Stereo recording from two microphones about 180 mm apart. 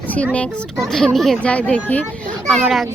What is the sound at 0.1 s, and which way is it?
A child's voice, 5° left (ahead or behind).